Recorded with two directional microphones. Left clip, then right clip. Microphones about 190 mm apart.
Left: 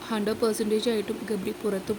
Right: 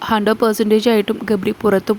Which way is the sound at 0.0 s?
45° right (ahead or behind).